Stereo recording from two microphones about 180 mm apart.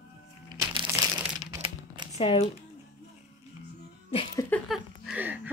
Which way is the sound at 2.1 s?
35° left (ahead or behind).